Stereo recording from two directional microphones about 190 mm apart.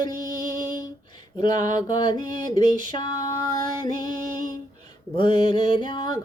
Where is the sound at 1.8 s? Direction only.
20° left (ahead or behind).